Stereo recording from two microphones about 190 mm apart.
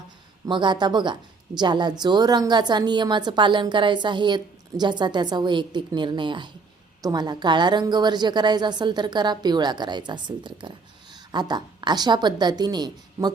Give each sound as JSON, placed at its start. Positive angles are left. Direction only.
{"t": 0.4, "sound": "a woman's voice", "side_deg": -25}